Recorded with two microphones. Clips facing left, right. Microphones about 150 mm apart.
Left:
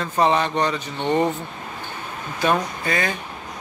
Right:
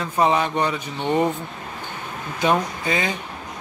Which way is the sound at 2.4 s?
15° right (ahead or behind).